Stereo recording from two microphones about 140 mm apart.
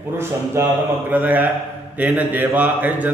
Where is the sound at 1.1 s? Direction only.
10° right (ahead or behind).